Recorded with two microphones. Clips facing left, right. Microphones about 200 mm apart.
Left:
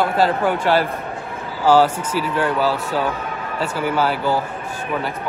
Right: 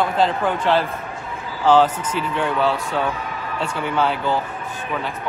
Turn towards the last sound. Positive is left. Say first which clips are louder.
# left 1 dB
turn(degrees=5)  # may be behind; listen again after turning